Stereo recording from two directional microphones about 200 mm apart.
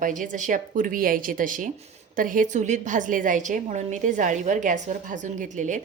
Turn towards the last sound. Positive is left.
turn(degrees=-40)  # may be behind; listen again after turning